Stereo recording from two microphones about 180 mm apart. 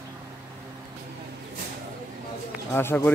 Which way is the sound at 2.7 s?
10° left (ahead or behind).